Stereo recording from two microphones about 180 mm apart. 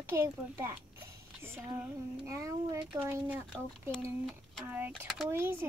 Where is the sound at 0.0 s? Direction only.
15° right (ahead or behind).